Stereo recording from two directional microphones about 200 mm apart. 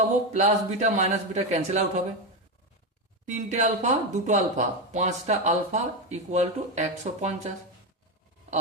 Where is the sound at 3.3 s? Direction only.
35° right (ahead or behind).